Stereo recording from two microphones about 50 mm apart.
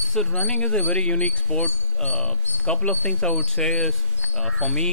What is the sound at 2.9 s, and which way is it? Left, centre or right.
Speech, left.